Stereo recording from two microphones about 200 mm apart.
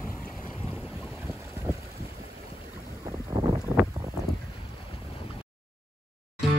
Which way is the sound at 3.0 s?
15° right (ahead or behind).